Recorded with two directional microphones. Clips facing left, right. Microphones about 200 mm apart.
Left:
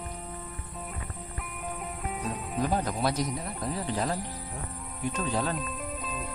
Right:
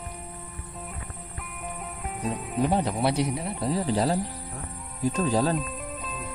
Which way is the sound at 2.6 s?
25° right (ahead or behind).